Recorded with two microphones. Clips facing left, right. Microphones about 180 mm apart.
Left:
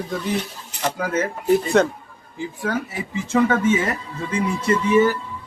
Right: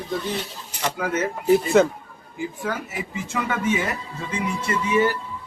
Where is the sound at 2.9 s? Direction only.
30° left (ahead or behind).